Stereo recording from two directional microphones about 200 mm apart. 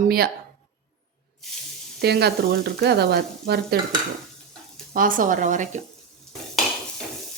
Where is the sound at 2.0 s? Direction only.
55° right (ahead or behind).